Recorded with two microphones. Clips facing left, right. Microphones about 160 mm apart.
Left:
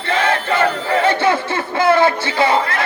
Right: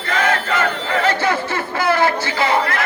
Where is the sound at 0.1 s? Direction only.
30° left (ahead or behind).